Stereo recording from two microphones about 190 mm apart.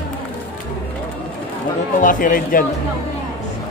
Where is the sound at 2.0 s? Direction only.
45° left (ahead or behind).